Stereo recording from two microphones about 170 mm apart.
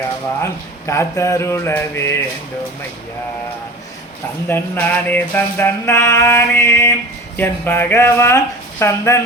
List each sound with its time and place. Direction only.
0.4 s mantra: 15° left (ahead or behind)
4.4 s mantra: 10° left (ahead or behind)